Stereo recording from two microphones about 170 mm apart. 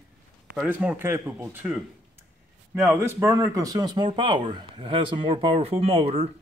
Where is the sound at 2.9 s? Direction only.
15° right (ahead or behind); by 6.3 s 35° right (ahead or behind).